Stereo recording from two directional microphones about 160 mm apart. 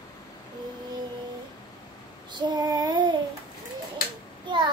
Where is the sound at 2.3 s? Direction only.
25° right (ahead or behind).